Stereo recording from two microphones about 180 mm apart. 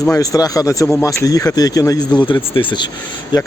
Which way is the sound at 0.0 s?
20° left (ahead or behind).